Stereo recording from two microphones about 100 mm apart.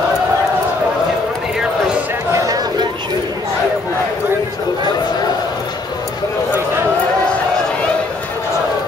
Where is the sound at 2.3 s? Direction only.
35° right (ahead or behind).